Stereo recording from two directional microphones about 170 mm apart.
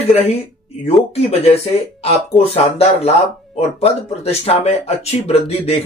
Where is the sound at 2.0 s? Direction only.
40° left (ahead or behind).